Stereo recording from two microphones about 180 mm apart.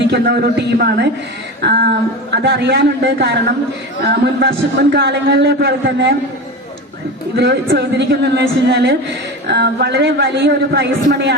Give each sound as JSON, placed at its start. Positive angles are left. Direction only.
{"t": 0.1, "sound": "a woman's voice", "side_deg": -60}
{"t": 7.3, "sound": "a man's voice", "side_deg": -70}